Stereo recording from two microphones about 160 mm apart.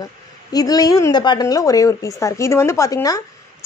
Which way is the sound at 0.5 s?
25° left (ahead or behind).